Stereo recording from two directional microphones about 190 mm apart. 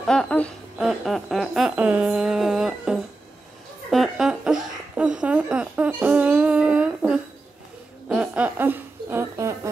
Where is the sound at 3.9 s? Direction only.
Centre (ahead or behind).